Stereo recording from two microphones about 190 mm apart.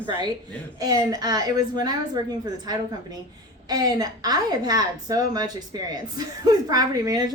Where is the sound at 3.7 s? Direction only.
20° right (ahead or behind).